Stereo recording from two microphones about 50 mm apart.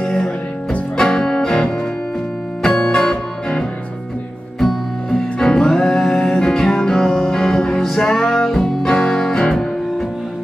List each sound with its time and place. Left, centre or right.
0.0 s music: centre